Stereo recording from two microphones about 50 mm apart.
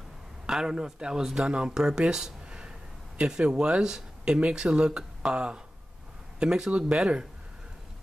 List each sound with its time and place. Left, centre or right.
0.5 s speech: centre